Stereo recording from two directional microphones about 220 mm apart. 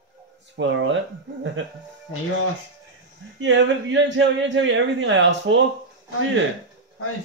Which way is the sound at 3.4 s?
55° right (ahead or behind).